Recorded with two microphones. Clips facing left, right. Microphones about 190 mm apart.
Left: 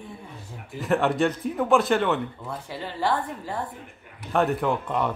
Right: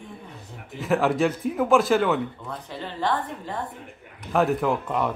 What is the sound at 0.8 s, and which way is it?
Speech, centre (ahead or behind).